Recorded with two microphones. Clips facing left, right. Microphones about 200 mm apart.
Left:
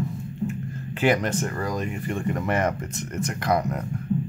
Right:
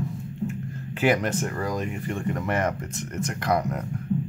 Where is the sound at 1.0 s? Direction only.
5° right (ahead or behind).